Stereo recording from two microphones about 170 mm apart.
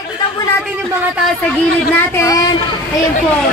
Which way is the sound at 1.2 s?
10° left (ahead or behind).